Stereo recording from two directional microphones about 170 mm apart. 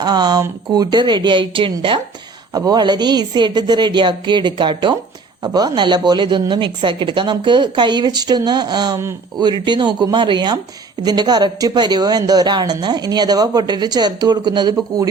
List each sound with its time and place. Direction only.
0.0 s speech: 25° right (ahead or behind)